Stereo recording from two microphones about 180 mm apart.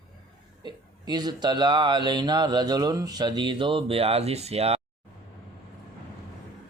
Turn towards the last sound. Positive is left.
turn(degrees=-35)  # may be behind; listen again after turning